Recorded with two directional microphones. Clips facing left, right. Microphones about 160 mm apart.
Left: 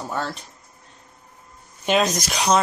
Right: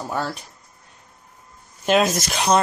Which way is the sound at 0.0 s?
5° right (ahead or behind).